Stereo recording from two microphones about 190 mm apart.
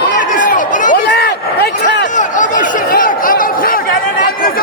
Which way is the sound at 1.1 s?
60° left (ahead or behind).